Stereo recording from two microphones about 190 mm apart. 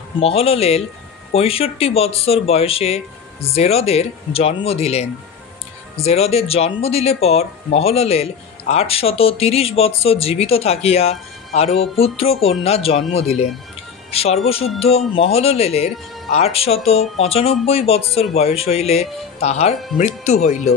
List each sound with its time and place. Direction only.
0.2 s speech: 30° left (ahead or behind)
14.1 s speech: 30° left (ahead or behind)